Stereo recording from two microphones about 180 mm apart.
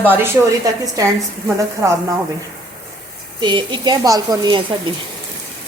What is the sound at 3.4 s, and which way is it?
A woman's voice, 25° right (ahead or behind).